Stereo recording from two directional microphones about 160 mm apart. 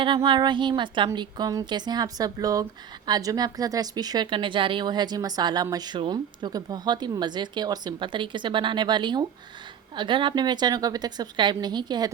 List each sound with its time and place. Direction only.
0.3 s speech: 30° right (ahead or behind)